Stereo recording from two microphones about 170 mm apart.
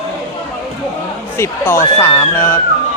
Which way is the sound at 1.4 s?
15° left (ahead or behind).